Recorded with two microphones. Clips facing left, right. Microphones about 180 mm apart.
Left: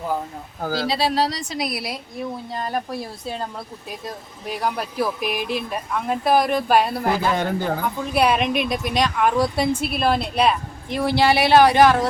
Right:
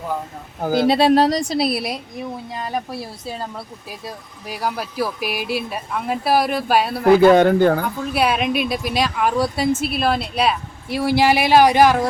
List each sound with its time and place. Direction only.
0.6 s speech: 20° right (ahead or behind)
0.9 s a woman's voice: 55° right (ahead or behind); by 2.0 s 25° right (ahead or behind)
2.6 s speech: 5° right (ahead or behind)
4.4 s speech: 5° right (ahead or behind)
7.2 s speech: 70° right (ahead or behind)
8.1 s a woman's voice: 5° right (ahead or behind)